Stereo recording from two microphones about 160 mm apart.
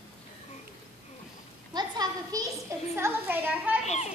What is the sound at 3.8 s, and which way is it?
Speech, 45° left (ahead or behind).